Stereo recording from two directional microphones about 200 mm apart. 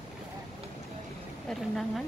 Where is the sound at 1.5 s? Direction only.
Centre (ahead or behind).